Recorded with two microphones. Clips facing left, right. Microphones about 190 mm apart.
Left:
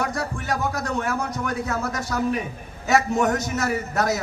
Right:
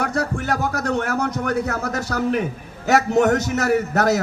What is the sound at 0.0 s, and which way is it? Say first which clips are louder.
A man's voice: right 4 dB; 70° right (ahead or behind).